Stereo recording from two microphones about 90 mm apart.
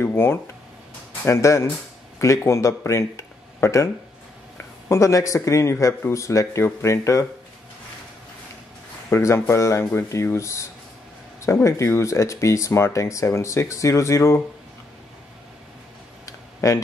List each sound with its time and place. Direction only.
0.0 s speech: 25° left (ahead or behind)
9.1 s speech: 30° left (ahead or behind)